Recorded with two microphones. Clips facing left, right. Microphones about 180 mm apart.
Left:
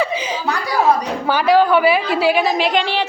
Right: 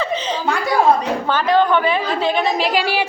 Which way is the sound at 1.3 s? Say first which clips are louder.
Left 3 dB; 10° left (ahead or behind).